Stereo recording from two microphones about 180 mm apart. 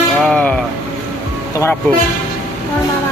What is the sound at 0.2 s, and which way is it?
Music, 5° left (ahead or behind).